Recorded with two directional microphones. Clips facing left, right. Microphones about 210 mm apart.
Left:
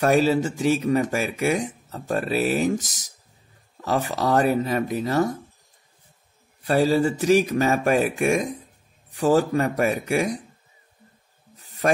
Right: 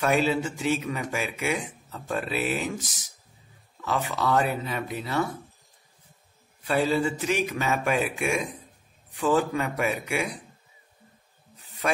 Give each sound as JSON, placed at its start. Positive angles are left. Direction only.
{"t": 0.0, "sound": "speech", "side_deg": 40}
{"t": 6.6, "sound": "speech", "side_deg": 40}
{"t": 11.5, "sound": "snake", "side_deg": 40}